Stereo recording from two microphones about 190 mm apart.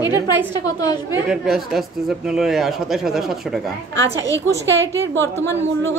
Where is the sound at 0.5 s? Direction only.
20° left (ahead or behind).